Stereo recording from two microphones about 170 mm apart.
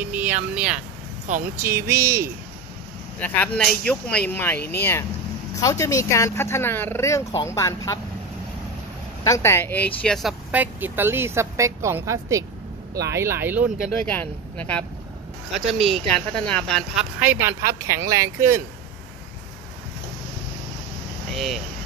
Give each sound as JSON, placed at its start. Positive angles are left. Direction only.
{"t": 0.0, "sound": "vehicle", "side_deg": -10}
{"t": 0.6, "sound": "speech", "side_deg": -5}
{"t": 1.2, "sound": "speech", "side_deg": -50}
{"t": 1.6, "sound": "speech", "side_deg": -15}
{"t": 3.2, "sound": "speech", "side_deg": 10}
{"t": 9.2, "sound": "speech", "side_deg": 15}
{"t": 10.5, "sound": "speech", "side_deg": -10}
{"t": 14.0, "sound": "speech", "side_deg": 10}